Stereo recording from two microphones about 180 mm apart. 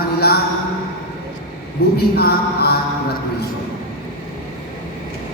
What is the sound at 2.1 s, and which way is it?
Speech, 60° left (ahead or behind).